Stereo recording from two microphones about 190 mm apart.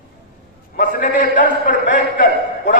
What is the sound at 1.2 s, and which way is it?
A man's voice, 45° left (ahead or behind).